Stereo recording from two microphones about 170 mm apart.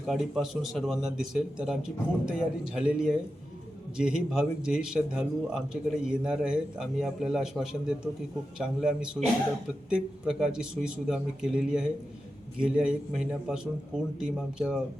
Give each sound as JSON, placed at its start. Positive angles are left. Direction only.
{"t": 0.0, "sound": "speech", "side_deg": 0}